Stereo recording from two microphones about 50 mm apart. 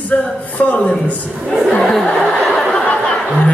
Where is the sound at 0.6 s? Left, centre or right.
Left.